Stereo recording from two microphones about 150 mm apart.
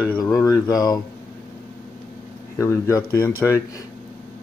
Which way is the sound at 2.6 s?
20° left (ahead or behind).